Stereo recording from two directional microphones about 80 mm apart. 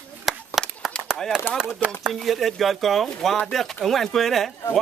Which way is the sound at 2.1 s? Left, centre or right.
Centre.